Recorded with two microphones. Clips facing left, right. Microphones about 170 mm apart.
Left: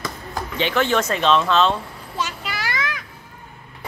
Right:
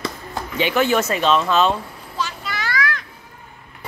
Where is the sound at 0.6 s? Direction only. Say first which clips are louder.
Right 2 dB; 10° right (ahead or behind).